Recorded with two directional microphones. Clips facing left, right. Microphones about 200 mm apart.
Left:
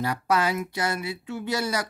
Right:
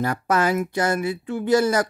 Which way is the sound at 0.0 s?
50° right (ahead or behind).